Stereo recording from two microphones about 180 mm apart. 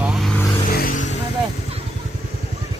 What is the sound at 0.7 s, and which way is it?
Vehicle, 50° left (ahead or behind).